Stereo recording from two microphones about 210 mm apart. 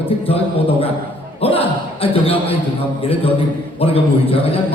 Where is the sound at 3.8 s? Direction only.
25° left (ahead or behind).